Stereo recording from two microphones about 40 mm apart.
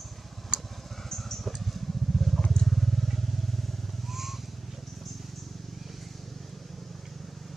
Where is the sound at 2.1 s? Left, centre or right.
Centre.